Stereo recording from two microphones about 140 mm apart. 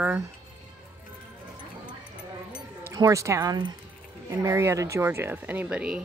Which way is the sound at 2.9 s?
25° right (ahead or behind).